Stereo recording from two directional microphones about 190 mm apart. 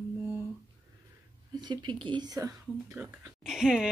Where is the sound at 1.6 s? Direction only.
25° right (ahead or behind).